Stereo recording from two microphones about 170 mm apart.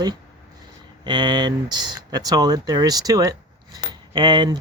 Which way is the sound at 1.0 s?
25° right (ahead or behind).